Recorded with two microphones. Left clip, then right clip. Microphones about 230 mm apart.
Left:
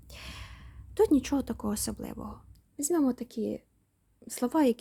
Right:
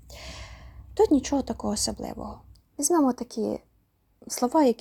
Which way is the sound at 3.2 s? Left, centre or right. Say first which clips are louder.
Right 5 dB; centre.